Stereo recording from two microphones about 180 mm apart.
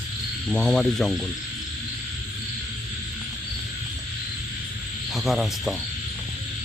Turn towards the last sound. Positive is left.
turn(degrees=0)  # may be behind; listen again after turning